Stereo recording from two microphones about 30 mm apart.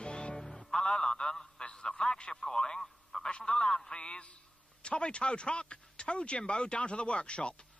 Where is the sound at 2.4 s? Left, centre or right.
Left.